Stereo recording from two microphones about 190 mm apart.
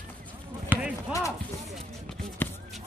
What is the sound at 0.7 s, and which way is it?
Clip-clop, 10° right (ahead or behind).